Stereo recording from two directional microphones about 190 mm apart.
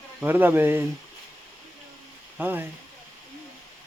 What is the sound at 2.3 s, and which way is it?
Speech, 10° right (ahead or behind).